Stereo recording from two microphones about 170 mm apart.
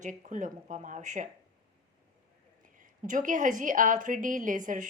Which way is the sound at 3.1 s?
50° right (ahead or behind).